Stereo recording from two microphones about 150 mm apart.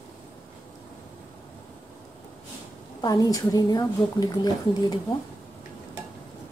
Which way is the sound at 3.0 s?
25° left (ahead or behind).